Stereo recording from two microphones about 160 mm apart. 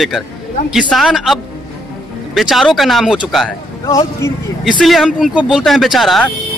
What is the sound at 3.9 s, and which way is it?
Speech, 20° left (ahead or behind).